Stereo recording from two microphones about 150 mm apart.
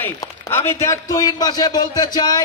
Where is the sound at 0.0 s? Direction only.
15° left (ahead or behind).